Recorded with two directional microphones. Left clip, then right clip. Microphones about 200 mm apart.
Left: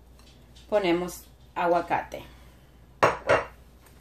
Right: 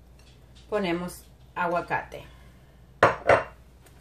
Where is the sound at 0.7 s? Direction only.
45° left (ahead or behind).